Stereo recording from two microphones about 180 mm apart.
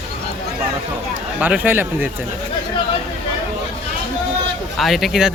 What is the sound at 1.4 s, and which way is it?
Speech, 10° right (ahead or behind).